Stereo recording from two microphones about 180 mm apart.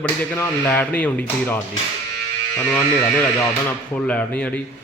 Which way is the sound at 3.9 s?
5° left (ahead or behind).